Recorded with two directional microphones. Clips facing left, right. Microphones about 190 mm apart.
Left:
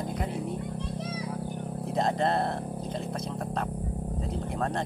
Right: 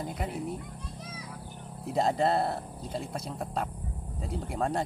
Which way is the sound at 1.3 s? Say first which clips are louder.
Left 10 dB; 50° left (ahead or behind).